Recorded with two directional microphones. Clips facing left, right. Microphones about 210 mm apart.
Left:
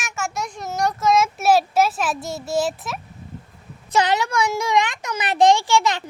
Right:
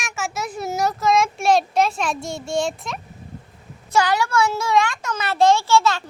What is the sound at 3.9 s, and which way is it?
A child's voice, 20° left (ahead or behind).